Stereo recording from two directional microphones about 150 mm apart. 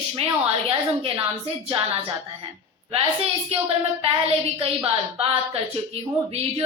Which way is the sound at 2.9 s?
40° right (ahead or behind).